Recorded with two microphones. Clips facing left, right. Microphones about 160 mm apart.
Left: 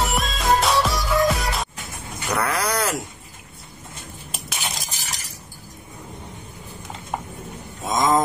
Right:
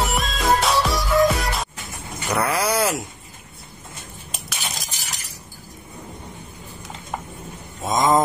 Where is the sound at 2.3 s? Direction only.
5° right (ahead or behind).